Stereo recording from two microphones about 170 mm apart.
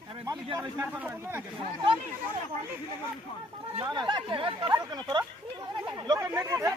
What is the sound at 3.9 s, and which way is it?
Speech, 25° right (ahead or behind).